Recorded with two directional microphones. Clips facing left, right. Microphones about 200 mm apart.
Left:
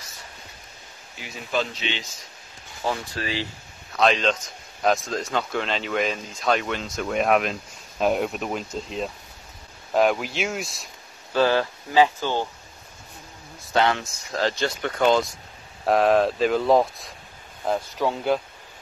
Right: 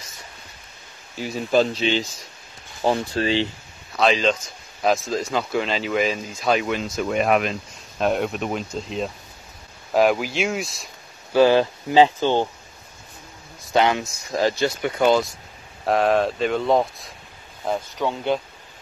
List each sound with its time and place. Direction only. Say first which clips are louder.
1.2 s speech: right 8 dB; 40° right (ahead or behind)
3.9 s speech: right 2 dB; centre (ahead or behind)
11.3 s speech: right 5 dB; 15° right (ahead or behind)
13.7 s speech: right 2 dB; 15° right (ahead or behind); by 18.4 s centre (ahead or behind)